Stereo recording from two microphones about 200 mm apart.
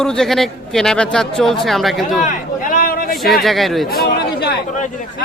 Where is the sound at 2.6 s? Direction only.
45° left (ahead or behind).